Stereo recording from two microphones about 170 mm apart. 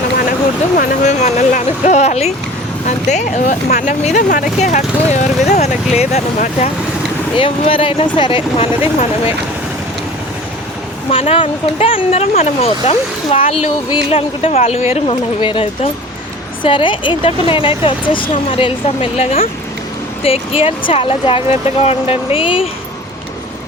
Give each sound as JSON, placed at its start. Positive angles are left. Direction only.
{"t": 0.8, "sound": "speech", "side_deg": 45}
{"t": 11.1, "sound": "speech", "side_deg": 35}